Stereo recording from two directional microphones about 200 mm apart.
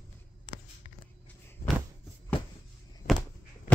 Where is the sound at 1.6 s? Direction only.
50° left (ahead or behind).